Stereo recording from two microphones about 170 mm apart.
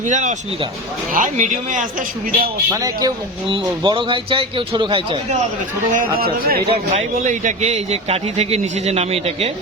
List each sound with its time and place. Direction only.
0.0 s a man's voice: 45° right (ahead or behind)
2.6 s a man's voice: 20° right (ahead or behind)
3.5 s a man's voice: 30° right (ahead or behind)
6.1 s speech: 65° right (ahead or behind)
6.7 s a man's voice: 40° right (ahead or behind)